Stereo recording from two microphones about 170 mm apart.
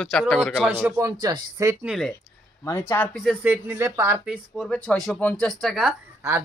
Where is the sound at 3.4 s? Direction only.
10° right (ahead or behind).